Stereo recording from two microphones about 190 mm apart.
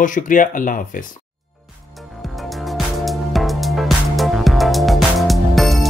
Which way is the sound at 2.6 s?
Centre (ahead or behind).